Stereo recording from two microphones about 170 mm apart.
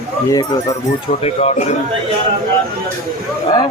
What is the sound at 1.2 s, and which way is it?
Speech, 40° left (ahead or behind).